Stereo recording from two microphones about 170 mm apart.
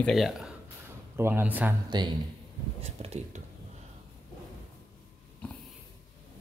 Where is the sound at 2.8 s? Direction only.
40° right (ahead or behind).